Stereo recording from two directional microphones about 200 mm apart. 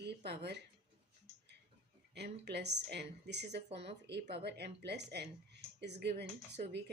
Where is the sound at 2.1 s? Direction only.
55° right (ahead or behind).